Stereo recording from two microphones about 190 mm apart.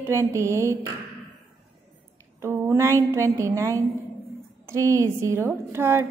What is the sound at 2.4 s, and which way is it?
A woman's voice, 15° right (ahead or behind).